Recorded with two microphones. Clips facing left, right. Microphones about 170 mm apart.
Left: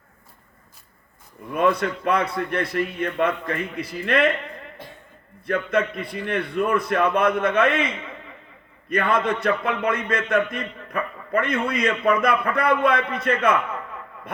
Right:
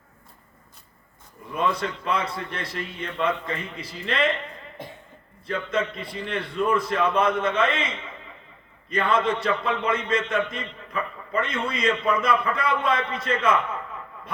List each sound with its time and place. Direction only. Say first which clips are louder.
1.5 s a man's voice: left 5 dB; 55° left (ahead or behind)
4.8 s a capella: right 2 dB; 20° right (ahead or behind)
5.5 s a man's voice: left 4 dB; 60° left (ahead or behind)